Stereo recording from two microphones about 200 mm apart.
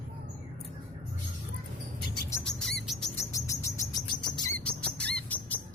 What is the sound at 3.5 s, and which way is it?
Bird, 15° left (ahead or behind).